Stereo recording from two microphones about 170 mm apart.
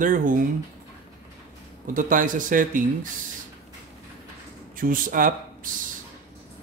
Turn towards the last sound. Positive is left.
turn(degrees=-55)  # may be behind; listen again after turning